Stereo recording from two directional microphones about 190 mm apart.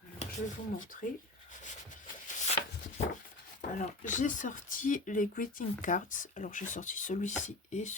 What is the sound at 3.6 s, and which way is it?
Speech, 40° left (ahead or behind).